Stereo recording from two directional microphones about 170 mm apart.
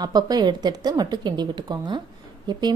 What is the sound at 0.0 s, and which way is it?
Speech, 25° right (ahead or behind).